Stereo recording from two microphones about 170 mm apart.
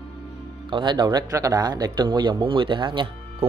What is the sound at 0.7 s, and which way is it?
Speech, 25° right (ahead or behind).